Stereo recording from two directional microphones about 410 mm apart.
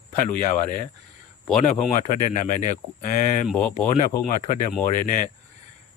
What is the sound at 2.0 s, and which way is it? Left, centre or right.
Speech, centre.